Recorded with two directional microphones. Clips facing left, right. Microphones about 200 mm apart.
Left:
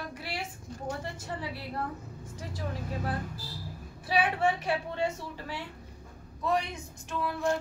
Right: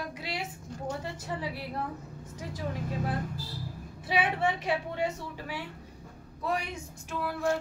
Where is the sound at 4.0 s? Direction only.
20° right (ahead or behind).